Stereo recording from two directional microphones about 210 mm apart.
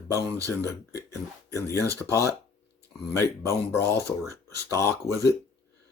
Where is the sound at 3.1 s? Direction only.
15° left (ahead or behind).